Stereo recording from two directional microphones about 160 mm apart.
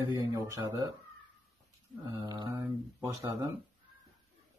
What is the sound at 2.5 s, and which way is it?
Speech, 15° right (ahead or behind).